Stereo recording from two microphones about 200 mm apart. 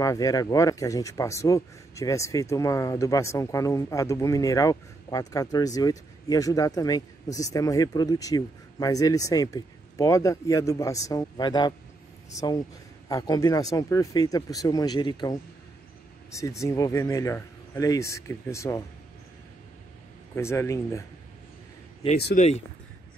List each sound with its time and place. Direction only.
0.0 s speech: 15° left (ahead or behind)
16.3 s speech: 15° left (ahead or behind)
20.3 s speech: 15° left (ahead or behind)
22.3 s speech: 35° left (ahead or behind)